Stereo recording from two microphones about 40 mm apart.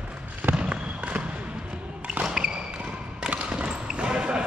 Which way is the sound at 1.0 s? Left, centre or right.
Right.